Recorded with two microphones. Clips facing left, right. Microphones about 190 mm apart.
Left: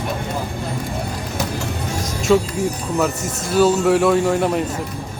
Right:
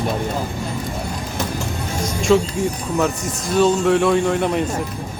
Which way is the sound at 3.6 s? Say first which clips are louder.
Left 1 dB; 5° left (ahead or behind).